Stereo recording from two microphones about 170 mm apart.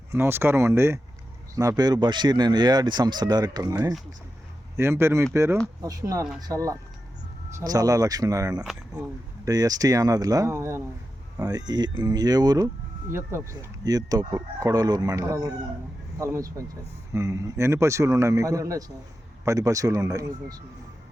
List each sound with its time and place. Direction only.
0.1 s a man's voice: 15° right (ahead or behind)
8.6 s speech: 5° right (ahead or behind)
9.4 s a man's voice: 20° right (ahead or behind)